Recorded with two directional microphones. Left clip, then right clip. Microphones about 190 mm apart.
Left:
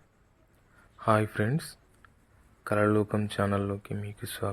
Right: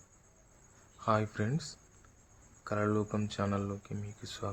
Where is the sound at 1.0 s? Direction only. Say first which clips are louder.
Left 6 dB; 25° left (ahead or behind).